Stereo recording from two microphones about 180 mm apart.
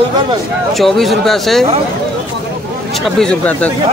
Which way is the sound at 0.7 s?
Centre (ahead or behind).